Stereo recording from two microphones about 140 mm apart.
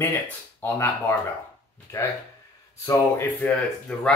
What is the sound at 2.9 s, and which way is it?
Speech, 15° left (ahead or behind).